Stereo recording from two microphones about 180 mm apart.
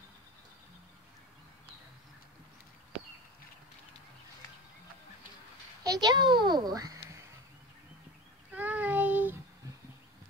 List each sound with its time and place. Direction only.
5.9 s a child's voice: 20° right (ahead or behind)
8.5 s child singing: 10° right (ahead or behind)